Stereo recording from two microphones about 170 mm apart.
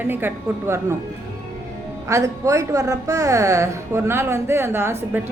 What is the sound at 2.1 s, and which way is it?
A woman's voice, 20° right (ahead or behind).